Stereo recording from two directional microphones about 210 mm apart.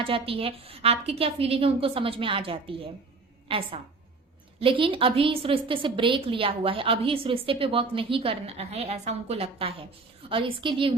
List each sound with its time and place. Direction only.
0.0 s a woman's voice: 25° right (ahead or behind)